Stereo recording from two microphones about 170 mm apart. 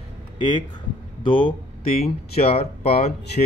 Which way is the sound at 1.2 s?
30° left (ahead or behind).